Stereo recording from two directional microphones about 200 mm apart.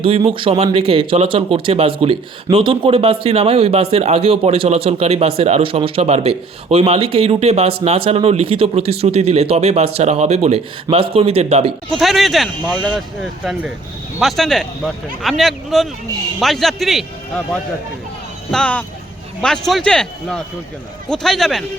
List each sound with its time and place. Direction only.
0.3 s speech: 30° right (ahead or behind)
11.9 s a man's voice: centre (ahead or behind)
18.5 s speech: 5° left (ahead or behind)